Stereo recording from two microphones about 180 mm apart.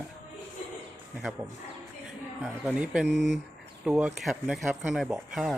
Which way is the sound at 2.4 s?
5° right (ahead or behind).